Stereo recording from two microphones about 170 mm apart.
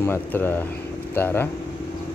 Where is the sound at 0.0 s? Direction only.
10° left (ahead or behind).